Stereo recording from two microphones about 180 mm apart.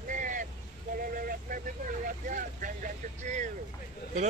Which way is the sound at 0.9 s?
50° right (ahead or behind).